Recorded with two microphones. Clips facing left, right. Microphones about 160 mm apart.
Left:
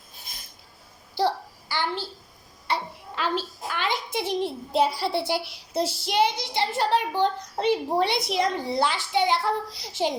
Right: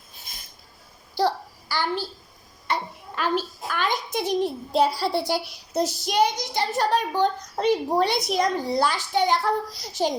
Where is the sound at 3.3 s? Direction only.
20° left (ahead or behind).